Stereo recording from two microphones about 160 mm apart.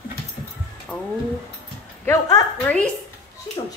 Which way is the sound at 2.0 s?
20° left (ahead or behind).